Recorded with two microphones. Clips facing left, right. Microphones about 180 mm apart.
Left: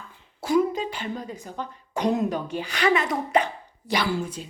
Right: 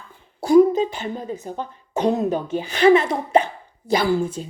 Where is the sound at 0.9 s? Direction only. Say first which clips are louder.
Right 4 dB; 25° right (ahead or behind).